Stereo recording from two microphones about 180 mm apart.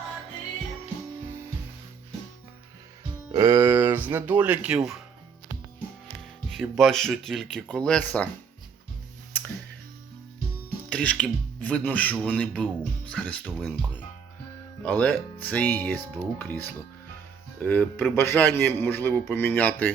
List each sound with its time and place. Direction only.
3.3 s speech: 15° right (ahead or behind)
6.5 s speech: centre (ahead or behind)
10.8 s a man's voice: 5° left (ahead or behind)